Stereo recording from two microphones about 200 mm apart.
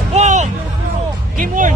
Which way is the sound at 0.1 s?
35° right (ahead or behind).